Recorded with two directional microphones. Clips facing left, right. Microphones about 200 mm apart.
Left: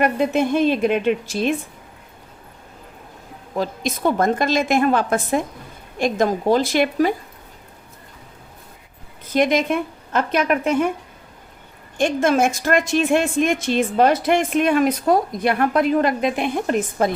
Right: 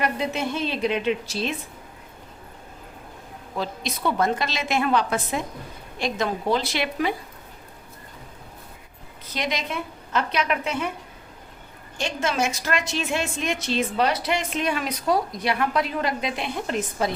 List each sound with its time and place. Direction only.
0.0 s a woman's voice: 50° left (ahead or behind)
3.6 s a woman's voice: 45° left (ahead or behind)
9.3 s a woman's voice: 50° left (ahead or behind)
11.9 s a woman's voice: 50° left (ahead or behind)